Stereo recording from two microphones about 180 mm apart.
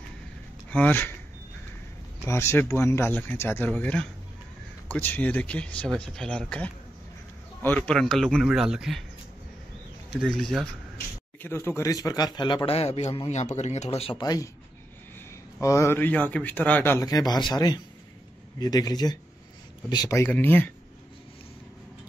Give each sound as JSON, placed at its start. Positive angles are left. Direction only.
{"t": 0.7, "sound": "speech", "side_deg": 10}
{"t": 2.2, "sound": "a man's voice", "side_deg": 15}
{"t": 10.1, "sound": "a man's voice", "side_deg": 0}
{"t": 11.4, "sound": "a man's voice", "side_deg": 15}
{"t": 15.6, "sound": "a man's voice", "side_deg": 15}